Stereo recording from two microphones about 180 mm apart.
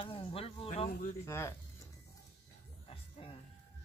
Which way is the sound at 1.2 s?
15° left (ahead or behind).